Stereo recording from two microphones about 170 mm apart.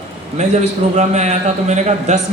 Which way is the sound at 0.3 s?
40° right (ahead or behind).